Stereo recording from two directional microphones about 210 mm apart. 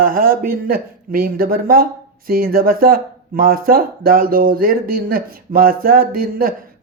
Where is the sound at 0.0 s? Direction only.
40° right (ahead or behind).